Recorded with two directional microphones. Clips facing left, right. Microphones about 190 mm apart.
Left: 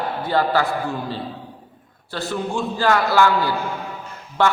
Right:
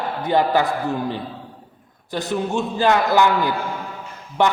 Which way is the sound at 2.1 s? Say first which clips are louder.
Right 2 dB; 20° right (ahead or behind).